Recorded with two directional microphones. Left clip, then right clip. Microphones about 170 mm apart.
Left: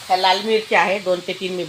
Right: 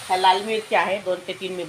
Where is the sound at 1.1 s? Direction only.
70° left (ahead or behind).